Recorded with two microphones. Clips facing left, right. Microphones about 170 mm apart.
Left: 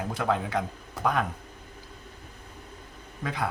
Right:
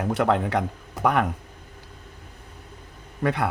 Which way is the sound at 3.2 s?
65° right (ahead or behind).